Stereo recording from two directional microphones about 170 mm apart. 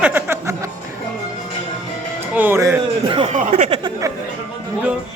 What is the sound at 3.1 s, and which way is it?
Speech, 30° right (ahead or behind).